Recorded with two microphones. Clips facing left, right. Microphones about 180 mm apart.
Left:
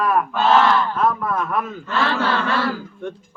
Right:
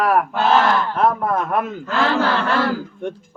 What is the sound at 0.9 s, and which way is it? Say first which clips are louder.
Speech: right 2 dB; 50° right (ahead or behind).